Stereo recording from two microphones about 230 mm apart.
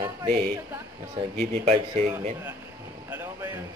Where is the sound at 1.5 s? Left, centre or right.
Right.